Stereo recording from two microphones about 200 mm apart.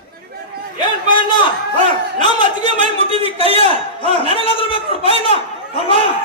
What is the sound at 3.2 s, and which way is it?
Speech, 30° right (ahead or behind).